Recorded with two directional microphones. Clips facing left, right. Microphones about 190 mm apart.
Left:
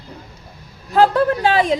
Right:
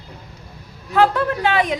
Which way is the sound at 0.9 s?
35° left (ahead or behind).